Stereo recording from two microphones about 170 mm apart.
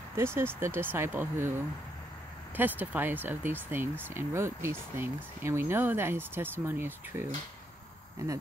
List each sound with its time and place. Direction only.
0.1 s speech: 15° right (ahead or behind)
2.5 s speech: 10° right (ahead or behind)